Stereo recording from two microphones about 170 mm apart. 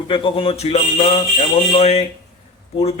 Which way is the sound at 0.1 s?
30° left (ahead or behind).